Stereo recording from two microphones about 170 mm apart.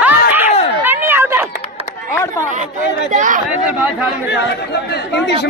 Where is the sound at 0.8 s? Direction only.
10° right (ahead or behind).